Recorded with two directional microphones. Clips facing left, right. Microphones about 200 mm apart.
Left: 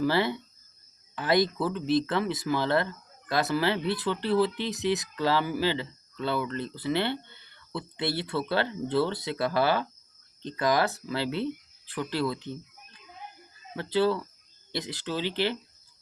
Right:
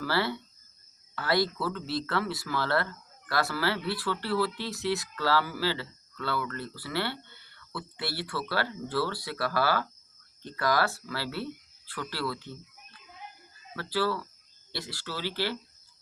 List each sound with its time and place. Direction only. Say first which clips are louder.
0.0 s speech: left 4 dB; 20° left (ahead or behind)